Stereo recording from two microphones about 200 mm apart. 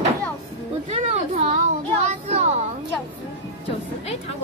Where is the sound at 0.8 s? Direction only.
30° right (ahead or behind).